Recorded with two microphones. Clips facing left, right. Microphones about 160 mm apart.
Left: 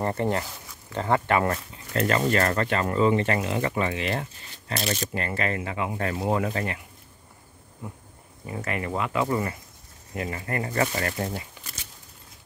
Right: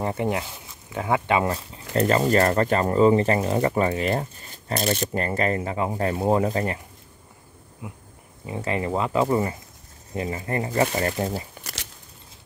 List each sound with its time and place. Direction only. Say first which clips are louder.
0.0 s speech: even; 10° right (ahead or behind)
2.0 s speech: right 4 dB; 35° right (ahead or behind)
7.8 s speech: right 1 dB; 10° right (ahead or behind)
8.5 s speech: right 4 dB; 30° right (ahead or behind)
11.6 s a sound: right 5 dB; 80° right